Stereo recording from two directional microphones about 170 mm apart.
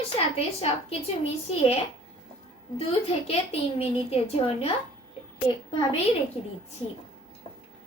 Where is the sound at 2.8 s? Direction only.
35° left (ahead or behind).